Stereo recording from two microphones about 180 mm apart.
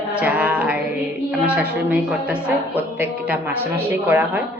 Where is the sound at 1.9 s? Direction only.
10° right (ahead or behind).